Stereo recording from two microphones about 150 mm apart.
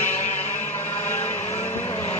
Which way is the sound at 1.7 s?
20° left (ahead or behind).